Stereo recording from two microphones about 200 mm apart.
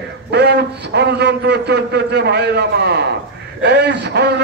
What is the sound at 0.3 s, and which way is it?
A man's voice, 55° right (ahead or behind).